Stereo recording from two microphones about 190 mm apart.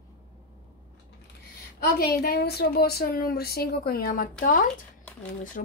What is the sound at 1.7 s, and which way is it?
A woman's voice, 55° left (ahead or behind).